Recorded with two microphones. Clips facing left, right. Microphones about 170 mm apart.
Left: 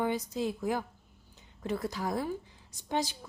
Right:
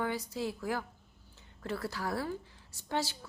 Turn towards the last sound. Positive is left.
turn(degrees=15)  # may be behind; listen again after turning